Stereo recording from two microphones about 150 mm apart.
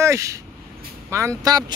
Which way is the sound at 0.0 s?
20° right (ahead or behind).